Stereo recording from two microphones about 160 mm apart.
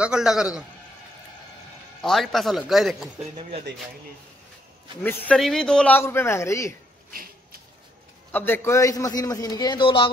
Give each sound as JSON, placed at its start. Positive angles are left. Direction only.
{"t": 0.0, "sound": "speech", "side_deg": -5}
{"t": 2.0, "sound": "speech", "side_deg": 0}
{"t": 5.0, "sound": "a man's voice", "side_deg": 10}
{"t": 8.3, "sound": "a man's voice", "side_deg": 10}